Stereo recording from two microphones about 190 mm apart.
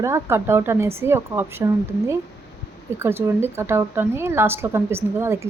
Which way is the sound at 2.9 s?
15° right (ahead or behind).